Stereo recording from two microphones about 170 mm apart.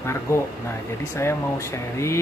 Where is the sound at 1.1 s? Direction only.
15° left (ahead or behind).